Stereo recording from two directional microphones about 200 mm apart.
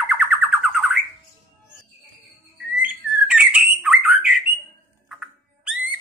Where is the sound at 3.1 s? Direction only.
5° right (ahead or behind).